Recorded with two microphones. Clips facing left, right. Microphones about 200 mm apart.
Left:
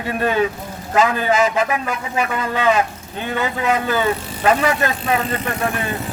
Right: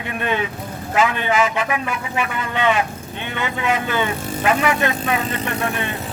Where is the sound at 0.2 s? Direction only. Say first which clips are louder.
Left 4 dB; 35° left (ahead or behind).